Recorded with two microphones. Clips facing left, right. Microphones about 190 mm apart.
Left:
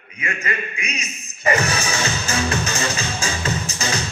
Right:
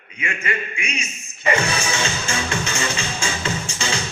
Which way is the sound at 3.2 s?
30° right (ahead or behind).